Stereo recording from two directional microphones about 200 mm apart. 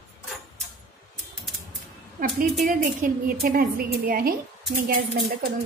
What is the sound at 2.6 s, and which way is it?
A woman's voice, 40° right (ahead or behind).